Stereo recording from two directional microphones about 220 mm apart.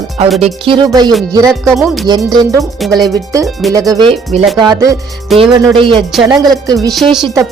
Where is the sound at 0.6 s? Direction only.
20° right (ahead or behind).